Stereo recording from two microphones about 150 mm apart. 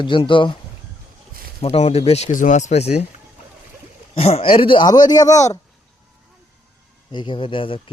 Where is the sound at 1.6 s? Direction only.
45° left (ahead or behind).